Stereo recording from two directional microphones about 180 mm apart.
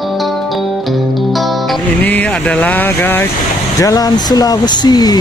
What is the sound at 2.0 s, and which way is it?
Speech, 10° left (ahead or behind).